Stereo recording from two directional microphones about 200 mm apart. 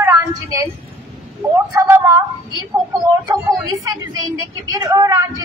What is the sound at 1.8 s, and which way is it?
Speech, 15° right (ahead or behind).